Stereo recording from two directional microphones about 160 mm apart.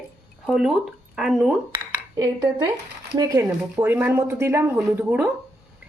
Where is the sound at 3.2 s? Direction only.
20° right (ahead or behind).